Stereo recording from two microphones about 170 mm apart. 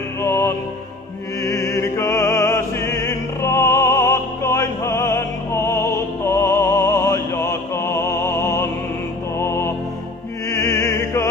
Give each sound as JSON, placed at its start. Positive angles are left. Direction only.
{"t": 0.2, "sound": "music", "side_deg": 15}